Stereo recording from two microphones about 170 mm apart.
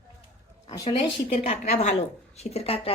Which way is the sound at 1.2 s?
40° left (ahead or behind).